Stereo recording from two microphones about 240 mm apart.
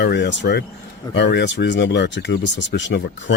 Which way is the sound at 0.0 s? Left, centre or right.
Left.